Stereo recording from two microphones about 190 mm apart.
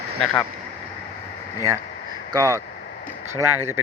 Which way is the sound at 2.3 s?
15° right (ahead or behind).